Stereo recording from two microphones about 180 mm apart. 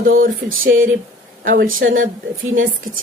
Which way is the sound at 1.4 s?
60° right (ahead or behind).